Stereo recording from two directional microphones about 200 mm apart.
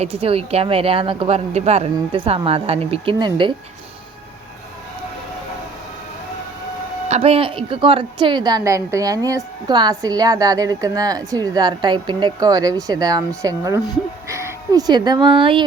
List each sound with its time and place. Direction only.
0.0 s a woman's voice: 30° right (ahead or behind)
7.1 s a woman's voice: 30° right (ahead or behind)